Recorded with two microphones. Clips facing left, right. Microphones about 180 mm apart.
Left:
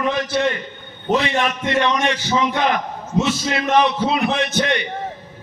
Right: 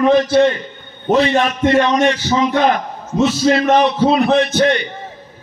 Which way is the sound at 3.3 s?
35° right (ahead or behind).